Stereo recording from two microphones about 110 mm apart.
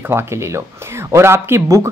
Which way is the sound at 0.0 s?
20° right (ahead or behind).